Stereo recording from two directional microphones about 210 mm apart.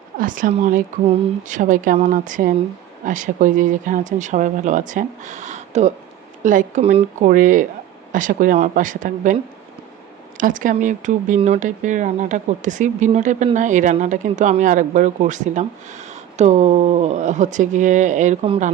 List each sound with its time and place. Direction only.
0.2 s speech: 40° right (ahead or behind)